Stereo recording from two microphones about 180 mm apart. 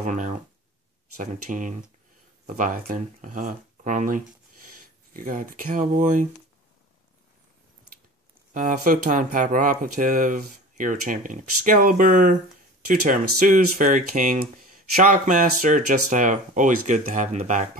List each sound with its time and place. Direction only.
0.0 s a sound: 45° right (ahead or behind)
1.2 s speech: 45° right (ahead or behind)
8.5 s speech: 50° right (ahead or behind)